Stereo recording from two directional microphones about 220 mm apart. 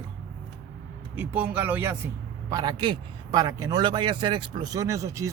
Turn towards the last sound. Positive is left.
turn(degrees=-15)  # may be behind; listen again after turning